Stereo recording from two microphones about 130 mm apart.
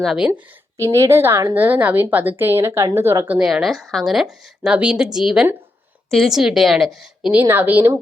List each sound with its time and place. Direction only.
0.0 s speech: centre (ahead or behind)
0.8 s a woman's voice: 25° right (ahead or behind)
3.5 s speech: centre (ahead or behind)
7.3 s a woman's voice: 15° right (ahead or behind)